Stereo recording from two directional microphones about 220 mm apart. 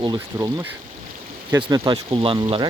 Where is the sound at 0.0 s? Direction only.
15° right (ahead or behind).